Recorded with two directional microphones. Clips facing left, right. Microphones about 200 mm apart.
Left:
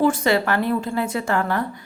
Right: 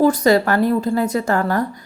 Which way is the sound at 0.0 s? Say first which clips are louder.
Right 4 dB; 40° right (ahead or behind).